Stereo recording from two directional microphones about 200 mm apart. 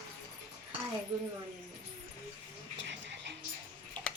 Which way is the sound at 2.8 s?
65° right (ahead or behind).